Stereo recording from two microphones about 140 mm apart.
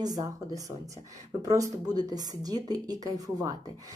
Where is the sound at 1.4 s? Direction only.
25° right (ahead or behind).